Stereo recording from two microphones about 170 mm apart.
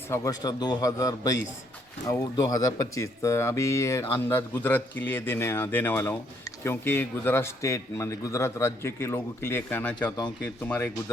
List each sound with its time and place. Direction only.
0.1 s a man's voice: 20° left (ahead or behind)